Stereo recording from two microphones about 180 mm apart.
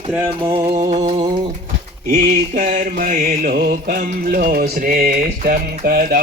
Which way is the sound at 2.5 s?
45° right (ahead or behind).